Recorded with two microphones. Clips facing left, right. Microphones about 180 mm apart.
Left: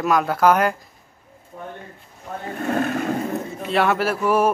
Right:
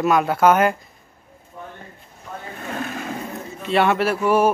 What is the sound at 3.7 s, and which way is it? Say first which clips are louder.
Speech: right 2 dB; centre (ahead or behind).